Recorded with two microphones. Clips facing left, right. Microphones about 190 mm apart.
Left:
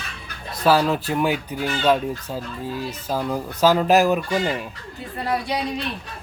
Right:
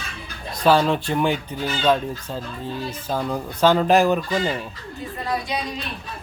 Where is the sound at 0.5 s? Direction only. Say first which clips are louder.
Right 1 dB; 5° left (ahead or behind).